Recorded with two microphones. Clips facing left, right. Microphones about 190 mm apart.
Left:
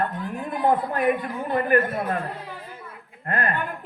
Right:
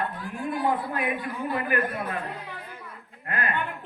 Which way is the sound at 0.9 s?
45° left (ahead or behind).